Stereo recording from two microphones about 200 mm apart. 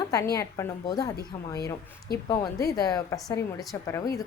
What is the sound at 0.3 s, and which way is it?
Speech, 15° left (ahead or behind).